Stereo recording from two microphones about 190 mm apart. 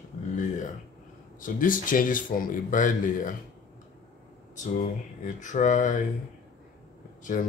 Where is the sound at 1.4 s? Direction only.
45° left (ahead or behind).